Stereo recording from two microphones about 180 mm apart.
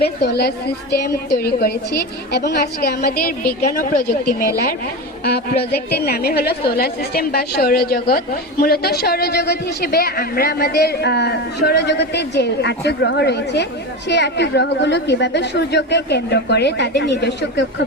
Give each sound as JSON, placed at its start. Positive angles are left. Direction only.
{"t": 0.0, "sound": "a woman's voice", "side_deg": 65}